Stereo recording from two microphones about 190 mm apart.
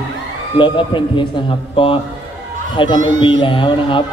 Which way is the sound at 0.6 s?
25° left (ahead or behind).